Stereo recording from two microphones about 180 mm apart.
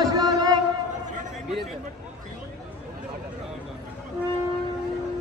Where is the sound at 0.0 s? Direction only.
20° right (ahead or behind).